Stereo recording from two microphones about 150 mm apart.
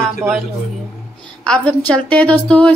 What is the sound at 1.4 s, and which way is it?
A woman's voice, 10° left (ahead or behind).